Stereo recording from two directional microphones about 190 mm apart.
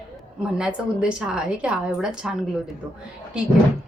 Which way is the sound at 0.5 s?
5° right (ahead or behind).